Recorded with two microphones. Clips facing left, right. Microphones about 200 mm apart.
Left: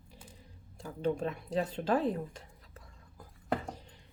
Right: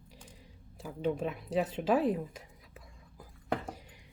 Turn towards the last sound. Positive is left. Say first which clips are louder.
# even
turn(degrees=-10)  # may be behind; listen again after turning